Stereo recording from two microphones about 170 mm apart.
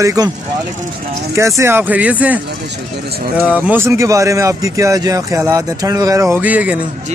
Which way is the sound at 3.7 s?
15° right (ahead or behind).